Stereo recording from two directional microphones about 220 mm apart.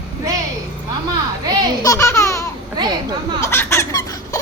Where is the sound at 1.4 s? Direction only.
20° right (ahead or behind).